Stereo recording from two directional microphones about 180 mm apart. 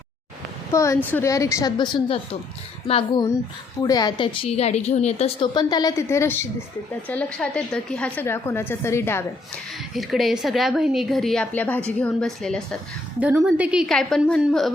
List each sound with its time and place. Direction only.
0.7 s a woman's voice: 15° left (ahead or behind); by 3.2 s 30° left (ahead or behind)
3.8 s a woman's voice: 20° left (ahead or behind)
9.9 s a woman's voice: centre (ahead or behind)
13.1 s a woman's voice: 10° right (ahead or behind)